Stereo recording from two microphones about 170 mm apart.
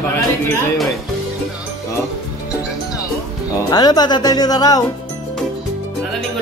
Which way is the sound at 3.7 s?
25° left (ahead or behind).